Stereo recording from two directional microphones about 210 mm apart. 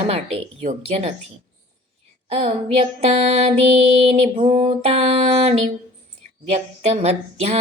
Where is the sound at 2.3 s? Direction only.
30° right (ahead or behind).